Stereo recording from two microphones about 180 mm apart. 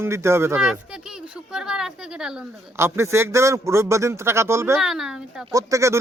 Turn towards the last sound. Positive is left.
turn(degrees=-15)  # may be behind; listen again after turning